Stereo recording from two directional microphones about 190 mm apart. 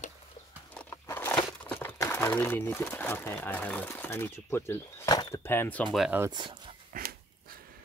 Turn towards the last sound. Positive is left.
turn(degrees=-45)  # may be behind; listen again after turning